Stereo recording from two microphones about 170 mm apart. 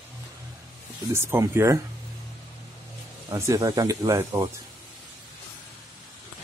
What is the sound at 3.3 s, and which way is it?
Speech, 20° right (ahead or behind).